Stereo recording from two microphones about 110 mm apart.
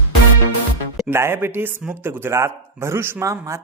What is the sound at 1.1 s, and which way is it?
A man's voice, 20° right (ahead or behind).